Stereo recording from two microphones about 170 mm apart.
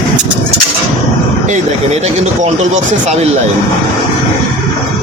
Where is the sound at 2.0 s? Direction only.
40° right (ahead or behind).